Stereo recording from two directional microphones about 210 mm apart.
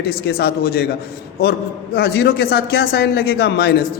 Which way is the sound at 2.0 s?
50° left (ahead or behind).